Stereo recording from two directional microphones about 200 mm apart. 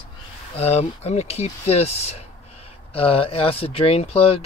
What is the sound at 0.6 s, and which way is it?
Speech, 30° left (ahead or behind).